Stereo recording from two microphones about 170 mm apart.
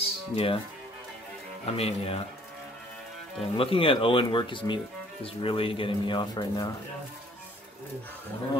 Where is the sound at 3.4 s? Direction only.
30° left (ahead or behind).